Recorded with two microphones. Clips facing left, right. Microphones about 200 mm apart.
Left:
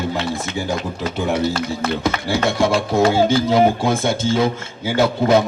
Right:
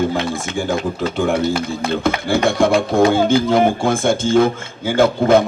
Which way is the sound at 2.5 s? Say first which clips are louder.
Right 3 dB; 55° right (ahead or behind).